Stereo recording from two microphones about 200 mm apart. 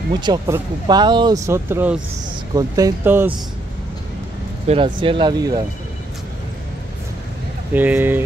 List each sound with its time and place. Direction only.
0.1 s speech: 20° right (ahead or behind)
4.6 s speech: 25° right (ahead or behind)
7.7 s speech: 10° right (ahead or behind)